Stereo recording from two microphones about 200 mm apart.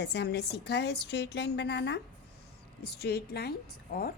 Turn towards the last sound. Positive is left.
turn(degrees=45)  # may be behind; listen again after turning